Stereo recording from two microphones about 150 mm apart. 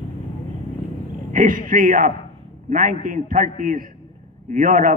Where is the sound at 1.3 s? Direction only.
65° right (ahead or behind).